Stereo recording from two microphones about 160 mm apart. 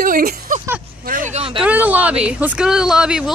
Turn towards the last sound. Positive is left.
turn(degrees=-5)  # may be behind; listen again after turning